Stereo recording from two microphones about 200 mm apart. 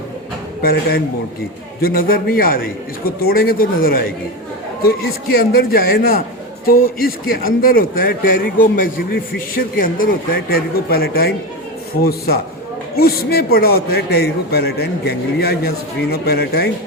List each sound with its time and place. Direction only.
0.6 s a man's voice: 50° left (ahead or behind)